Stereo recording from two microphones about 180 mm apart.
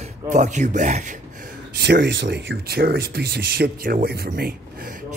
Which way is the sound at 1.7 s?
70° right (ahead or behind).